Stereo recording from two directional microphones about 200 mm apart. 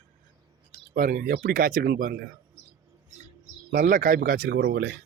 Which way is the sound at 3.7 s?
45° right (ahead or behind).